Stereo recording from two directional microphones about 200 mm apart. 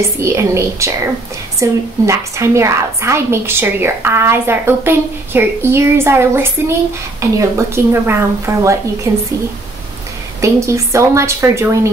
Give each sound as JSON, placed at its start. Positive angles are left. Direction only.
{"t": 0.2, "sound": "a woman's voice", "side_deg": -15}
{"t": 10.4, "sound": "a woman's voice", "side_deg": -15}